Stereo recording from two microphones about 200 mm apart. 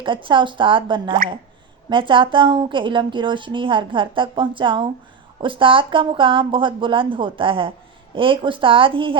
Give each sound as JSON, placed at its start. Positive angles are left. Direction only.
{"t": 0.0, "sound": "a woman's voice", "side_deg": -25}